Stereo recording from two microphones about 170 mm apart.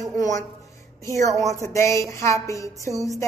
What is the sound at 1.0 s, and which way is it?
A woman's voice, 20° left (ahead or behind).